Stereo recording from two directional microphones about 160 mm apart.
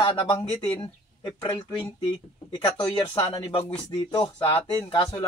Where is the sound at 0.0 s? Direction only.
30° left (ahead or behind).